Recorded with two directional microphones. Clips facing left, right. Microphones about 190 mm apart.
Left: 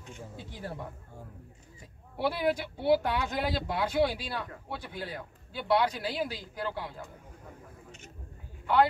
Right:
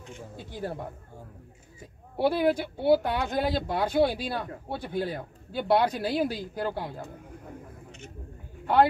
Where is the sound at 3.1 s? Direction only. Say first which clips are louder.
Right 4 dB; 45° right (ahead or behind).